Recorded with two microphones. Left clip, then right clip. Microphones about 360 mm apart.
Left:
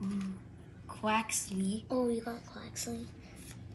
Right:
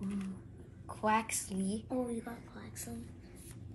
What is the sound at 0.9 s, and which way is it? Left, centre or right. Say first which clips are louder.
Speech: even; centre.